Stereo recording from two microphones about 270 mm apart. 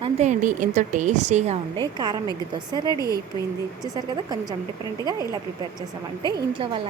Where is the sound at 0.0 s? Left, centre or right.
Right.